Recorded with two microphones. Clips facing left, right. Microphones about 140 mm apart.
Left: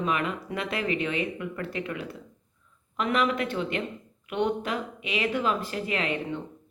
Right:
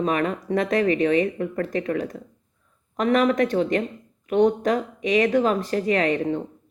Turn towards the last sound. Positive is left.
turn(degrees=-40)  # may be behind; listen again after turning